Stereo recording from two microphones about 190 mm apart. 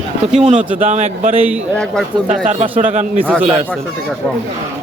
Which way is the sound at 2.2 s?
40° right (ahead or behind).